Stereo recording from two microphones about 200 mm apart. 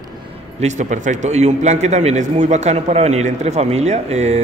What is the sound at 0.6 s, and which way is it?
A man's voice, 35° right (ahead or behind).